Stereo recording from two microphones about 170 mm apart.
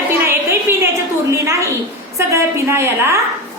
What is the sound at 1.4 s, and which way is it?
A woman's voice, 15° right (ahead or behind).